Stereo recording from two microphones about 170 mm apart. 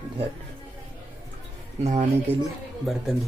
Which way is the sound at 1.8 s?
45° right (ahead or behind).